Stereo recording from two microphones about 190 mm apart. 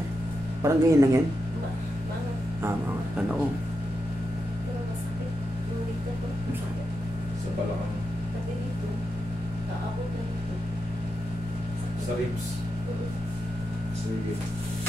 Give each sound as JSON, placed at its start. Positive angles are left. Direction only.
{"t": 0.6, "sound": "speech", "side_deg": -15}